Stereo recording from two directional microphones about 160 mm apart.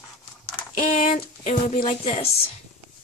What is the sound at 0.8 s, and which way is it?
Speech, 55° left (ahead or behind).